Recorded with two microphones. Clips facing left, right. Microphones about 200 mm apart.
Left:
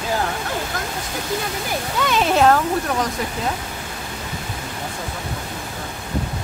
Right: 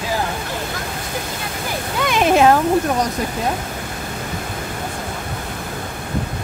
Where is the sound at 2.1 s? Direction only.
15° right (ahead or behind).